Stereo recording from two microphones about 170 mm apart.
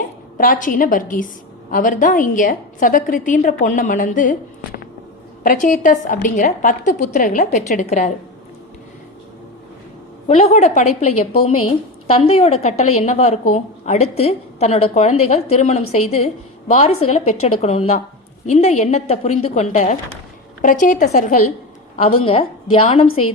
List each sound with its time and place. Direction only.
0.3 s a woman's voice: 55° left (ahead or behind)
10.2 s a woman's voice: 40° left (ahead or behind)
16.6 s a woman's voice: 50° left (ahead or behind)
21.9 s a woman's voice: 35° left (ahead or behind)